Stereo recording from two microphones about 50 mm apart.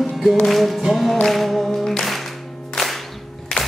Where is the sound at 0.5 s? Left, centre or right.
Centre.